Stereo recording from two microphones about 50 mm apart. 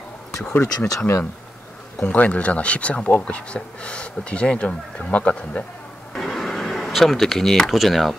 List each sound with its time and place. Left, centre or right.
0.6 s speech: left
2.0 s speech: left
3.1 s speech: left
3.3 s speech: left
6.1 s a sound: centre
7.8 s speech: centre